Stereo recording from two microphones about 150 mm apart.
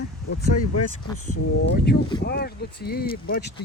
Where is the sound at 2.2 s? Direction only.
90° left.